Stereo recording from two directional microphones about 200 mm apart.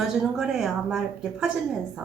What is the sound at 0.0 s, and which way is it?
A woman's voice, centre (ahead or behind).